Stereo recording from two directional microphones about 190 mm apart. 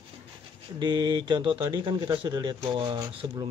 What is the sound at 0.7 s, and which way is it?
Speech, 25° right (ahead or behind).